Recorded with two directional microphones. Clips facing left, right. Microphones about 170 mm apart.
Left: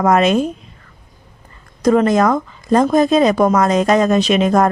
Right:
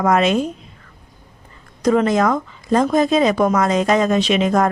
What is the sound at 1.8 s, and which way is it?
Speech, 45° left (ahead or behind).